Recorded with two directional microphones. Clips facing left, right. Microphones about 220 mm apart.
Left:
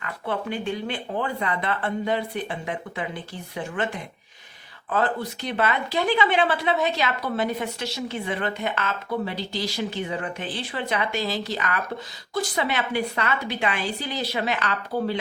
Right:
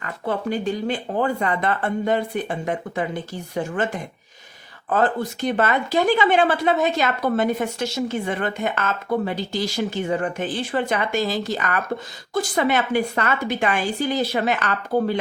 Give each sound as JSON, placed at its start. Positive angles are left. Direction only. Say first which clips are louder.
{"t": 0.0, "sound": "speech", "louder": "right 4 dB", "side_deg": -40}